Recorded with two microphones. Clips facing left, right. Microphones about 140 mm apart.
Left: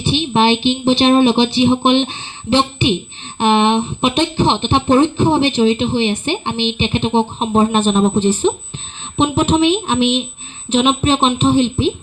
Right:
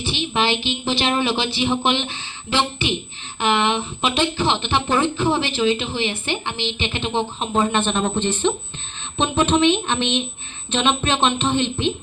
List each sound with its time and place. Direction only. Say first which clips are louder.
0.0 s speech: left 7 dB; 20° left (ahead or behind)
9.6 s speech: left 4 dB; 5° left (ahead or behind)